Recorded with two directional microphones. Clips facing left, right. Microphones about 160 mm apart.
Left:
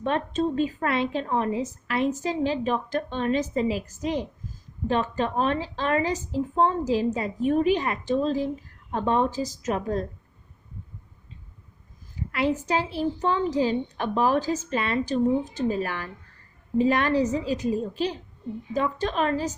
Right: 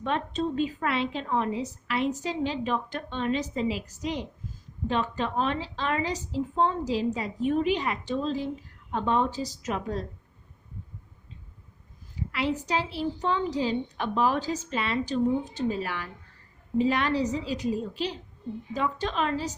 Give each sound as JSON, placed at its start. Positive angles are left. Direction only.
{"t": 0.0, "sound": "a woman's voice", "side_deg": 45}
{"t": 12.3, "sound": "a woman's voice", "side_deg": 45}